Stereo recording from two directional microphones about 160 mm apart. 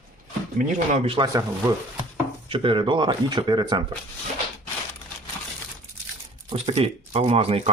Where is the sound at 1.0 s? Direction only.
35° right (ahead or behind).